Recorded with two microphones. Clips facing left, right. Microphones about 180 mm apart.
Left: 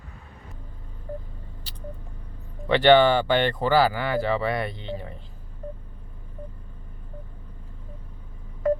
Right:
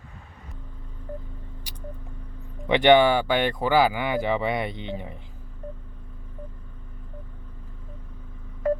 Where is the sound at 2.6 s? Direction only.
15° right (ahead or behind).